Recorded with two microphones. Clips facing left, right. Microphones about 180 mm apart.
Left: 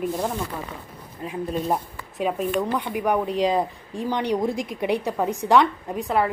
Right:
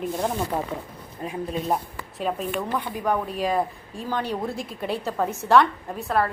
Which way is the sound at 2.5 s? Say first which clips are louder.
Left 3 dB; 15° left (ahead or behind).